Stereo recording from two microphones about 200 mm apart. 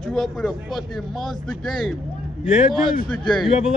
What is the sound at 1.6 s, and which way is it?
Speech, centre (ahead or behind).